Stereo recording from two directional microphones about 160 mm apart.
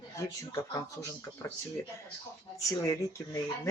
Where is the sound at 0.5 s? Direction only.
20° left (ahead or behind).